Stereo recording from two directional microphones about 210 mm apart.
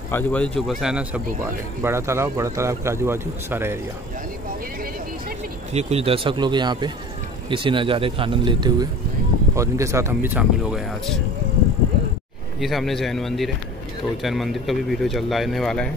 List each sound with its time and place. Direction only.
0.1 s speech: 5° left (ahead or behind); by 3.8 s 10° right (ahead or behind)
5.7 s speech: 30° right (ahead or behind); by 11.1 s centre (ahead or behind)
12.5 s speech: centre (ahead or behind)